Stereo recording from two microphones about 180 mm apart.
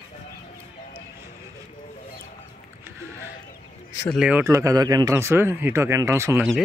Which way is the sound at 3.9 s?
15° left (ahead or behind).